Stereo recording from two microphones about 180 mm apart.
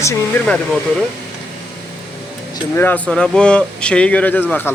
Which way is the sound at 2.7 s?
10° left (ahead or behind).